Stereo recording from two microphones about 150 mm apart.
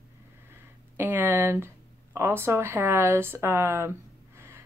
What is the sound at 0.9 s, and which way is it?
A woman's voice, 10° right (ahead or behind).